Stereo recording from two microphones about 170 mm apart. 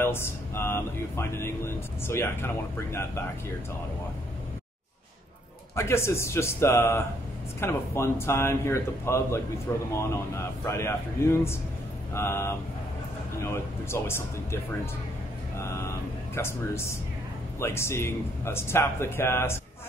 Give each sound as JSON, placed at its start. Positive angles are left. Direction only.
{"t": 0.0, "sound": "speech", "side_deg": 15}
{"t": 5.8, "sound": "speech", "side_deg": 15}